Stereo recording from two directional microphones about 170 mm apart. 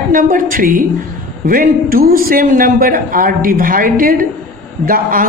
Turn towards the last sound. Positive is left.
turn(degrees=-55)  # may be behind; listen again after turning